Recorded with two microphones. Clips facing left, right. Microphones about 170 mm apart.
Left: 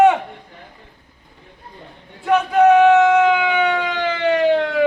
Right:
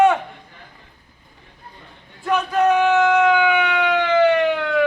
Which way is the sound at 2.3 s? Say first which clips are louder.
Left 5 dB; 20° left (ahead or behind).